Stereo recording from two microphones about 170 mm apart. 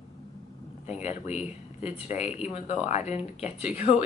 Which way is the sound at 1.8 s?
40° left (ahead or behind).